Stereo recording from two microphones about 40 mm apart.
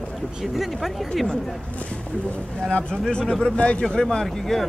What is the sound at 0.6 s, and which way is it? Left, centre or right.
Speech, centre.